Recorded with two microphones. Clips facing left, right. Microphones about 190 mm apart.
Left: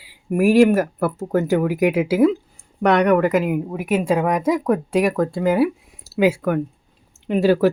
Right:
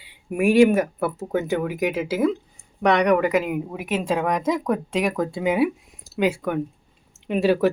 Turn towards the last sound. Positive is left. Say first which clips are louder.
# left 3 dB
turn(degrees=0)  # may be behind; listen again after turning